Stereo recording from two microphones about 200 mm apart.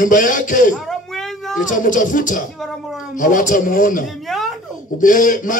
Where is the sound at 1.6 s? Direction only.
40° left (ahead or behind).